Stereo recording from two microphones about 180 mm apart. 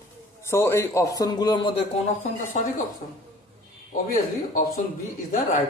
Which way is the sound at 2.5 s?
40° left (ahead or behind).